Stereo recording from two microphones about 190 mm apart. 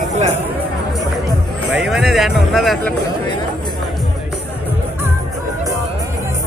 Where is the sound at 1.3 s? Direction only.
5° right (ahead or behind).